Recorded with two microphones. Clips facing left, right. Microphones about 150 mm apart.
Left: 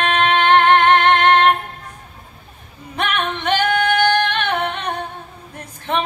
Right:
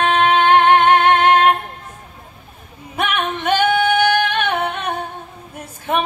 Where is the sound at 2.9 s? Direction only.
5° right (ahead or behind).